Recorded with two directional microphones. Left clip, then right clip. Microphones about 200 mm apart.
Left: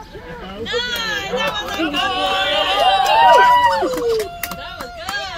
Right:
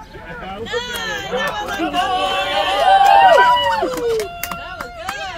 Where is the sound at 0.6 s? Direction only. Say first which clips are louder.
Left 3 dB; 15° right (ahead or behind).